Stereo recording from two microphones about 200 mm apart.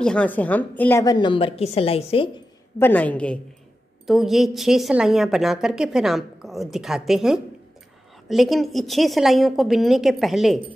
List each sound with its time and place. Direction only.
0.0 s a woman's voice: 5° left (ahead or behind); by 2.2 s 30° left (ahead or behind)
2.8 s a woman's voice: 10° left (ahead or behind)